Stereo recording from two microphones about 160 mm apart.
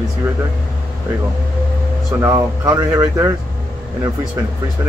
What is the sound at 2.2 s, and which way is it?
Speech, 20° right (ahead or behind).